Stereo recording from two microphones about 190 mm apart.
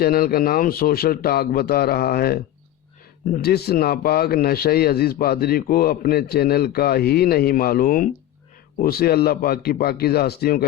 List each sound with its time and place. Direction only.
0.0 s speech: 55° left (ahead or behind)